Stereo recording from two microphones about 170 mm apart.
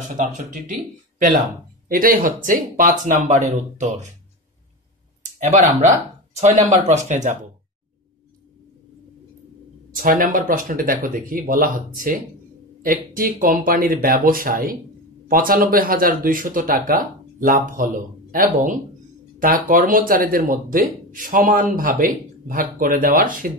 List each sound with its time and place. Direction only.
1.9 s speech: 55° right (ahead or behind)
5.2 s a sound: 45° right (ahead or behind)
5.8 s speech: 45° right (ahead or behind)
9.9 s speech: 55° right (ahead or behind)